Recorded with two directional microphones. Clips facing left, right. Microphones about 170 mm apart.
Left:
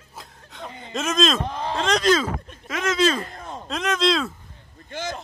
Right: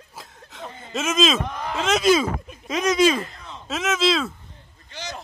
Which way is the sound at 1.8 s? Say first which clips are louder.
Right 2 dB; 5° right (ahead or behind).